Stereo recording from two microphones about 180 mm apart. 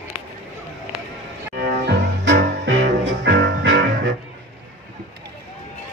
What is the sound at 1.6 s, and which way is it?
Music, 75° right (ahead or behind).